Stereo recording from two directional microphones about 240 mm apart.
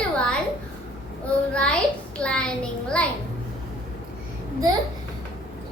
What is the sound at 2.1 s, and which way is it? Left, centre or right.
Speech, centre.